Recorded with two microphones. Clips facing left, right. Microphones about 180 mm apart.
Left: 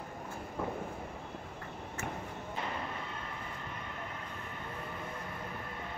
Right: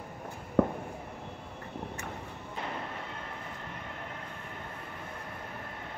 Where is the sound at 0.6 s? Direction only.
65° right (ahead or behind).